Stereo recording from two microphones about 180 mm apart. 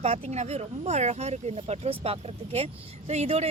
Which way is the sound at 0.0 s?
35° right (ahead or behind).